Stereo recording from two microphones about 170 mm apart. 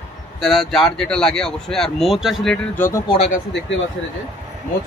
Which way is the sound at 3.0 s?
35° left (ahead or behind).